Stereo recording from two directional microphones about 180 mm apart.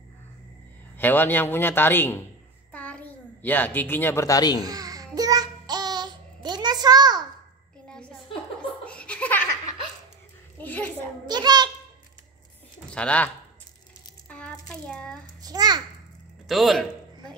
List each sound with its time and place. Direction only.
0.9 s a man's voice: 10° left (ahead or behind)
4.6 s child singing: 20° right (ahead or behind)
7.9 s a sound: 5° left (ahead or behind)
8.5 s laughter: 5° left (ahead or behind)
10.6 s a sound: 10° left (ahead or behind)
11.2 s a child's voice: 25° right (ahead or behind)
12.9 s a man's voice: 5° left (ahead or behind)
14.3 s a sound: 5° left (ahead or behind)
15.4 s a child's voice: 20° right (ahead or behind)
16.4 s a man's voice: centre (ahead or behind)